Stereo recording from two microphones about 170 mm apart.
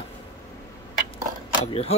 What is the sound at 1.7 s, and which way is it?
Speech, 35° left (ahead or behind).